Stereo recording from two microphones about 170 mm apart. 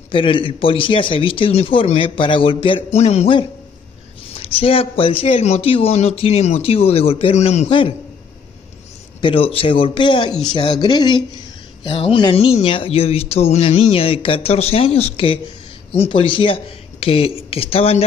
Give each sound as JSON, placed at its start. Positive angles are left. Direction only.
{"t": 0.1, "sound": "speech", "side_deg": 30}
{"t": 9.2, "sound": "speech", "side_deg": 30}